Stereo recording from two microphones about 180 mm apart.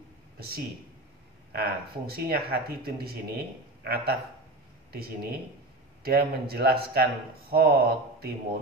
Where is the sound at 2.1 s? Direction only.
60° right (ahead or behind).